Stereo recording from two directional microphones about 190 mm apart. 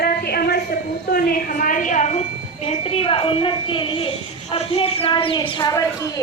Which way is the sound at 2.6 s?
30° left (ahead or behind).